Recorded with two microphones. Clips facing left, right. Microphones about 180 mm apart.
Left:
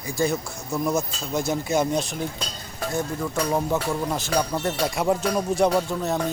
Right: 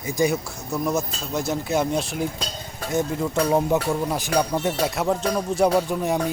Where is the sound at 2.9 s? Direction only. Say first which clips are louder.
Right 4 dB; 20° right (ahead or behind).